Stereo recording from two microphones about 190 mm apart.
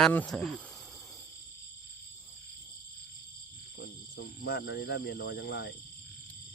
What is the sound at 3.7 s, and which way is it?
Speech, 55° left (ahead or behind).